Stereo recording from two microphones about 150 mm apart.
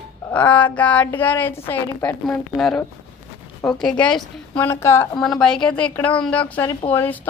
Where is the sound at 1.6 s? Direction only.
10° left (ahead or behind).